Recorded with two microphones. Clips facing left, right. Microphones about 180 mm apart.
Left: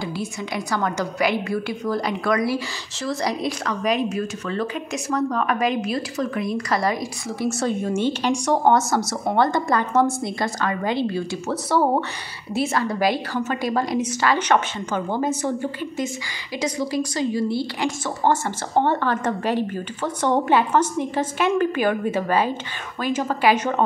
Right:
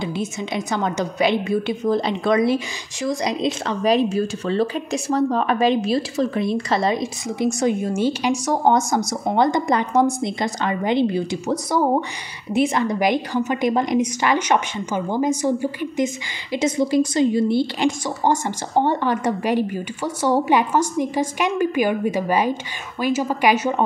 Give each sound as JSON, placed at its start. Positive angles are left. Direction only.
{"t": 0.0, "sound": "a woman's voice", "side_deg": -20}
{"t": 12.5, "sound": "speech", "side_deg": -20}
{"t": 16.5, "sound": "speech", "side_deg": -25}